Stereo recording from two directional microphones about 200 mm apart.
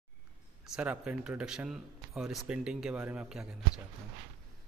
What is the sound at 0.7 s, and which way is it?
Speech, 5° right (ahead or behind).